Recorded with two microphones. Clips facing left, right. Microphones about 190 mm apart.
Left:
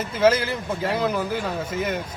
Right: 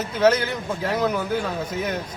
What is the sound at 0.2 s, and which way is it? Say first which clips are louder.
A man's voice: even; centre (ahead or behind).